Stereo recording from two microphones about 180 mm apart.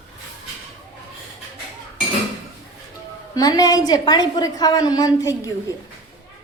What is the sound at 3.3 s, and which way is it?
A woman's voice, 20° left (ahead or behind).